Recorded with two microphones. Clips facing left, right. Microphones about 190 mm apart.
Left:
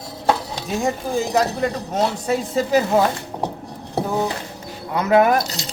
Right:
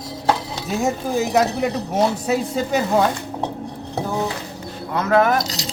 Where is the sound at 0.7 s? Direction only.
5° right (ahead or behind).